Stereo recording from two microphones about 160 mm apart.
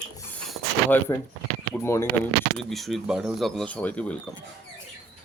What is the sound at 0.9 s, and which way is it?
Speech, 10° left (ahead or behind).